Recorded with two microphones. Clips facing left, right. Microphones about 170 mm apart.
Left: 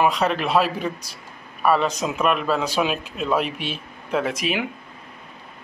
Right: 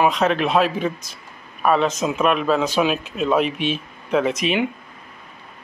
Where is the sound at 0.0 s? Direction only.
60° right (ahead or behind).